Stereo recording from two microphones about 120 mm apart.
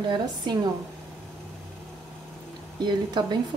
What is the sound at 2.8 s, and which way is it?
Speech, 40° right (ahead or behind).